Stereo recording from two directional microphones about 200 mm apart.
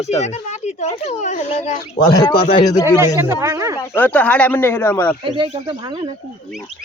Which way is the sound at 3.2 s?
15° right (ahead or behind).